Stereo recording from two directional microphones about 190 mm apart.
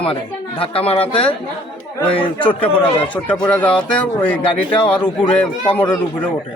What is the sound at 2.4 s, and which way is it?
Speech, 25° left (ahead or behind).